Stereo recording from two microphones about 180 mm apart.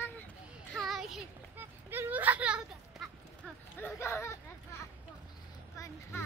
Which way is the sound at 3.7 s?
15° left (ahead or behind).